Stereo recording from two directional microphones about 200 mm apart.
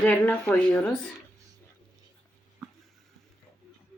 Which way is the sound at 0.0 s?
10° left (ahead or behind).